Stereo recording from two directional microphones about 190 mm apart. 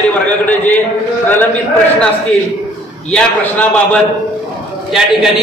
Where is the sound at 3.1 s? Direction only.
5° left (ahead or behind).